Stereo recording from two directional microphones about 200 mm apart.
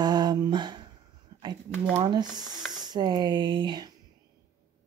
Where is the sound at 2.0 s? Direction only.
25° right (ahead or behind).